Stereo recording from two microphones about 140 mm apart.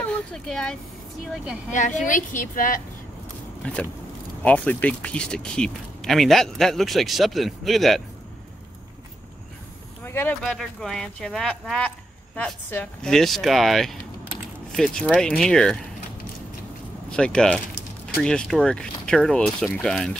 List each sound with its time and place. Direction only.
0.0 s speech: 5° left (ahead or behind)
1.7 s a woman's voice: 65° left (ahead or behind)
3.7 s speech: 10° left (ahead or behind)
10.0 s a sound: 15° left (ahead or behind)
10.4 s speech: 5° left (ahead or behind)
13.0 s speech: centre (ahead or behind)
17.1 s speech: 5° left (ahead or behind)